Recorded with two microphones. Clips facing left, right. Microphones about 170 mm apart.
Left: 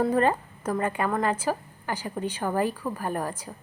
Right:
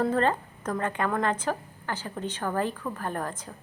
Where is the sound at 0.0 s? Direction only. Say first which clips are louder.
Left 2 dB; 10° left (ahead or behind).